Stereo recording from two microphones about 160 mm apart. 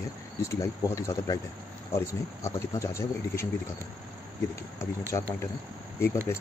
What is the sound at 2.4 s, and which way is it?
Speech, 20° left (ahead or behind).